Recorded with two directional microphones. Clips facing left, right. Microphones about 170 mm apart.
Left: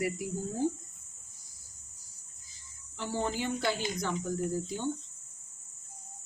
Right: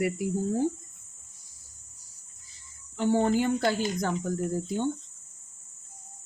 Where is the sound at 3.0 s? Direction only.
55° right (ahead or behind).